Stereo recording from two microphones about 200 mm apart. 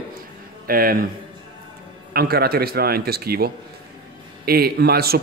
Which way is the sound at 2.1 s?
50° right (ahead or behind).